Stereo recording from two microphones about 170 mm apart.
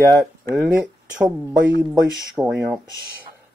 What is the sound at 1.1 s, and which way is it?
Speech, 5° right (ahead or behind).